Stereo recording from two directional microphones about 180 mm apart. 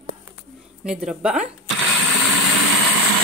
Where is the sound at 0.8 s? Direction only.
5° right (ahead or behind).